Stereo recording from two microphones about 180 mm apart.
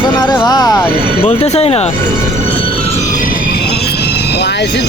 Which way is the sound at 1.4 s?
35° left (ahead or behind).